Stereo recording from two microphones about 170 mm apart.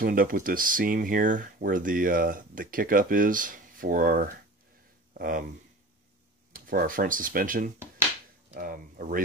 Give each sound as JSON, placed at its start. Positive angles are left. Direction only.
{"t": 0.0, "sound": "speech", "side_deg": -55}
{"t": 6.5, "sound": "speech", "side_deg": -55}